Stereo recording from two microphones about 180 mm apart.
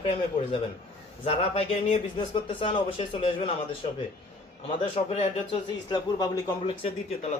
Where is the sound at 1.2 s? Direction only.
35° left (ahead or behind).